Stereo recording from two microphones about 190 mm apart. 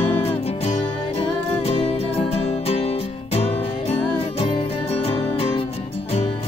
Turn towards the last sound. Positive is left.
turn(degrees=30)  # may be behind; listen again after turning